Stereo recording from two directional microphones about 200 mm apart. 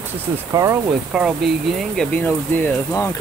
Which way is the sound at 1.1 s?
Centre (ahead or behind).